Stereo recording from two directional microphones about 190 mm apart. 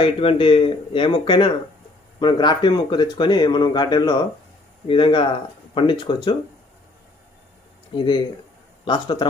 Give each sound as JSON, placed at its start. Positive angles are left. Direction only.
{"t": 0.0, "sound": "speech", "side_deg": 30}
{"t": 7.9, "sound": "speech", "side_deg": 25}